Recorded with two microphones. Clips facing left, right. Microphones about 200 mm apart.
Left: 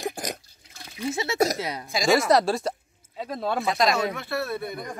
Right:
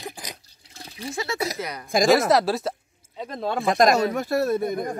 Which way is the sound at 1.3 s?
45° left (ahead or behind).